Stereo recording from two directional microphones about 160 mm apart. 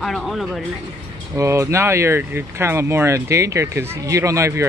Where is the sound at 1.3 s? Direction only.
20° right (ahead or behind).